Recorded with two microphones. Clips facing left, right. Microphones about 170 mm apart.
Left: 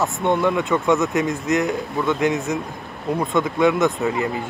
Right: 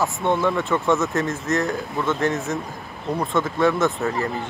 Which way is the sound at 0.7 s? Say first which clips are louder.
Left 2 dB; 15° left (ahead or behind).